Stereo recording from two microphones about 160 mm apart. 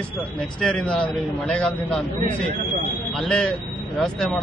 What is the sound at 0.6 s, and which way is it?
A man's voice, 5° left (ahead or behind).